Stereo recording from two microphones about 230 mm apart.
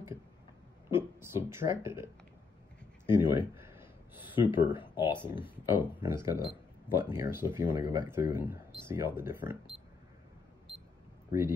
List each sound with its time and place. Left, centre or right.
0.8 s speech: centre
3.1 s speech: centre
3.5 s a sound: centre
4.2 s speech: left
5.3 s speech: centre